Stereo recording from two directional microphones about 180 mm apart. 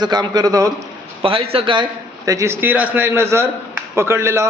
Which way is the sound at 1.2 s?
30° right (ahead or behind).